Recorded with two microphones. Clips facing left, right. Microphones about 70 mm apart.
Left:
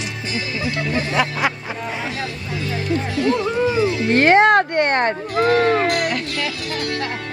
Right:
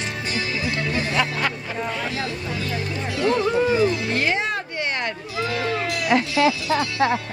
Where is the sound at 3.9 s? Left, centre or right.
Left.